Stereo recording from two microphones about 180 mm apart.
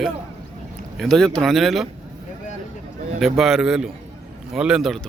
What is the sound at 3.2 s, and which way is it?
A man's voice, centre (ahead or behind).